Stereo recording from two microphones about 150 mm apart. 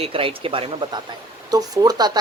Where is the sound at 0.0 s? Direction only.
40° right (ahead or behind).